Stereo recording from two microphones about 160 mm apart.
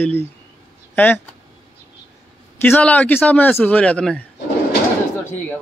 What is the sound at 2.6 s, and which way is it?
Speech, 10° left (ahead or behind).